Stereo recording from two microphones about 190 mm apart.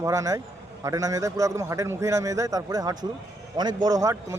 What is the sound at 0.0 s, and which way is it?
A man's voice, 15° right (ahead or behind).